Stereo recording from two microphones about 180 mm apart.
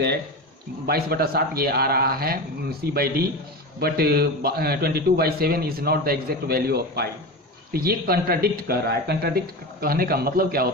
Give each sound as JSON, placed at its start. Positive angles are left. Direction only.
{"t": 0.9, "sound": "a man's voice", "side_deg": -60}